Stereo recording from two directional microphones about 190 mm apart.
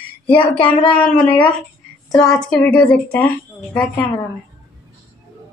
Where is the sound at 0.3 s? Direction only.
25° left (ahead or behind).